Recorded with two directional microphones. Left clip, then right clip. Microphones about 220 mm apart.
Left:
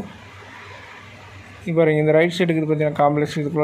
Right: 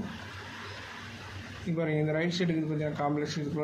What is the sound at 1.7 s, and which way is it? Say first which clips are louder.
Speech: left 15 dB; 25° left (ahead or behind).